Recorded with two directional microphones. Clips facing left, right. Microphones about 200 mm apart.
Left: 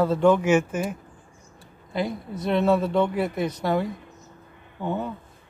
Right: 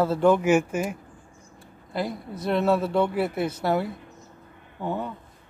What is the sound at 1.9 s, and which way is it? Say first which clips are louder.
Speech: left 2 dB; centre (ahead or behind).